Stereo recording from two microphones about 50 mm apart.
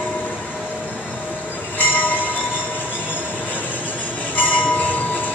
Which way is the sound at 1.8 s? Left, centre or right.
Left.